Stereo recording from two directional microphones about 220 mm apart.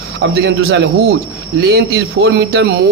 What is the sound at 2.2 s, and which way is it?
Speech, 50° right (ahead or behind).